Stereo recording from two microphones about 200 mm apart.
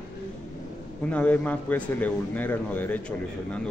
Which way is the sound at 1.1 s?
5° left (ahead or behind).